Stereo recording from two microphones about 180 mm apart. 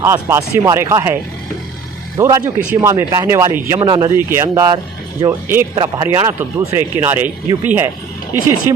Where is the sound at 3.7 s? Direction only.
25° right (ahead or behind).